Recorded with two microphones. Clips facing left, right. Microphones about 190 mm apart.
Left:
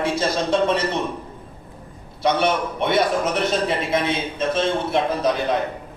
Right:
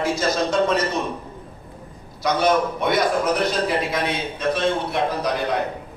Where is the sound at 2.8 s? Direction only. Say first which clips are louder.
Left 1 dB; 25° left (ahead or behind).